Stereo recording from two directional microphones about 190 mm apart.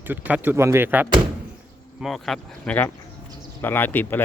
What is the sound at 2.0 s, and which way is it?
Speech, centre (ahead or behind).